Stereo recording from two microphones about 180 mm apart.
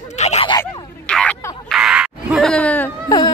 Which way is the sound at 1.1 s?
5° left (ahead or behind).